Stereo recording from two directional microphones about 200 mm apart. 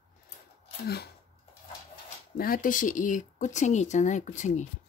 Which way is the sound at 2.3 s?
45° left (ahead or behind).